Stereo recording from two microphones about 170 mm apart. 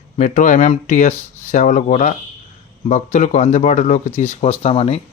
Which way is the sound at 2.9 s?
45° left (ahead or behind).